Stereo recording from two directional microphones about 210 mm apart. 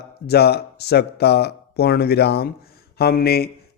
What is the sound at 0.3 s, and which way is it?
A man's voice, 50° left (ahead or behind).